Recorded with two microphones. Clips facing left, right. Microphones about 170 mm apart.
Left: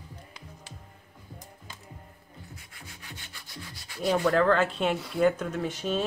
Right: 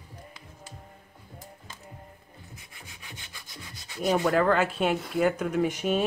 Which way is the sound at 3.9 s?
15° right (ahead or behind).